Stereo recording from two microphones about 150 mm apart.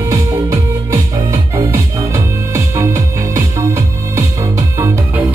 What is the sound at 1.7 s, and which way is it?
Music, 20° right (ahead or behind).